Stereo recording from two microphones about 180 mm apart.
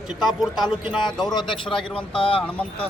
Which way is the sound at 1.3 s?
25° left (ahead or behind).